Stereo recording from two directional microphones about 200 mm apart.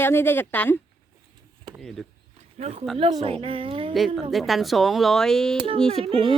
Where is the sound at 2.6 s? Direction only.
30° right (ahead or behind).